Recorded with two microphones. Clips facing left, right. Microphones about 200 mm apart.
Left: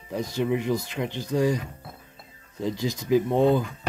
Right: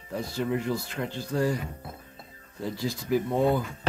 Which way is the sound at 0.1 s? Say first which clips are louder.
Left 3 dB; 15° left (ahead or behind).